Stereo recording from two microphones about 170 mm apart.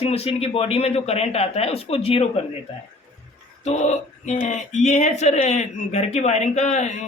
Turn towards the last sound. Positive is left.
turn(degrees=45)  # may be behind; listen again after turning